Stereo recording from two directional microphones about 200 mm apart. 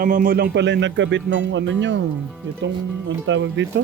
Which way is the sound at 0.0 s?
45° right (ahead or behind).